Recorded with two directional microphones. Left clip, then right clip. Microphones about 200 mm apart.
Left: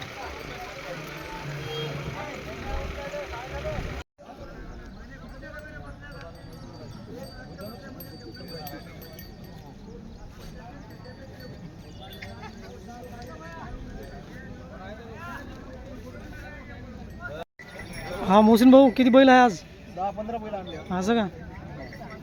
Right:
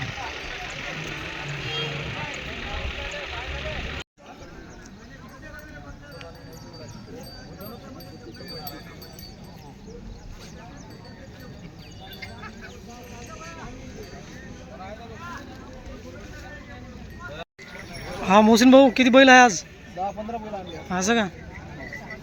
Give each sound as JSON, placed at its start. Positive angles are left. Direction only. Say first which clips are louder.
{"t": 0.0, "sound": "vehicle", "louder": "right 4 dB", "side_deg": 60}
{"t": 18.2, "sound": "a man's voice", "louder": "right 2 dB", "side_deg": 5}